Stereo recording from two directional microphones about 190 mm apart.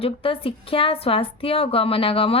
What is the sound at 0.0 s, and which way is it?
A woman's voice, 30° left (ahead or behind).